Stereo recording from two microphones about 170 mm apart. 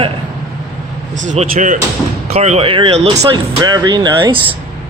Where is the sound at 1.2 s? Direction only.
45° right (ahead or behind).